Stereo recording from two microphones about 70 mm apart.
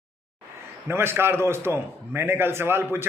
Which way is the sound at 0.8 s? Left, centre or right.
Right.